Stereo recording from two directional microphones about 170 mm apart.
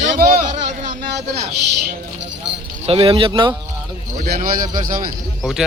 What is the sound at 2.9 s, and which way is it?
Speech, 30° right (ahead or behind).